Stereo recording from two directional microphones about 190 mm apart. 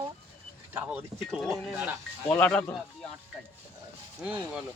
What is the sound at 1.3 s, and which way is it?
Speech, centre (ahead or behind).